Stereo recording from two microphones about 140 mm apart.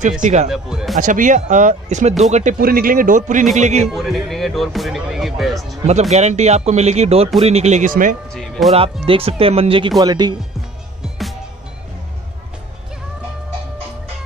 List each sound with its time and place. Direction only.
0.2 s speech: 55° right (ahead or behind)
0.5 s speech: 5° right (ahead or behind)
0.9 s speech: 65° right (ahead or behind)
3.9 s speech: centre (ahead or behind)
5.9 s speech: 50° right (ahead or behind); by 8.2 s 70° right (ahead or behind)
8.3 s speech: centre (ahead or behind)
9.0 s speech: 40° right (ahead or behind)